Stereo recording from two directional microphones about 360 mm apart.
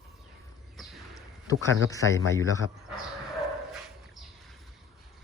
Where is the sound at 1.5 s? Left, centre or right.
Centre.